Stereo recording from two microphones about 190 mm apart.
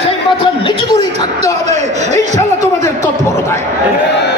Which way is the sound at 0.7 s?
25° left (ahead or behind).